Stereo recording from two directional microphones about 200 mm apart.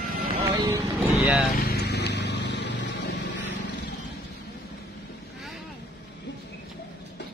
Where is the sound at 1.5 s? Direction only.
55° left (ahead or behind).